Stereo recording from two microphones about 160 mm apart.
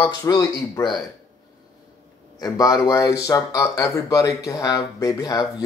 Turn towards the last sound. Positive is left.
turn(degrees=25)  # may be behind; listen again after turning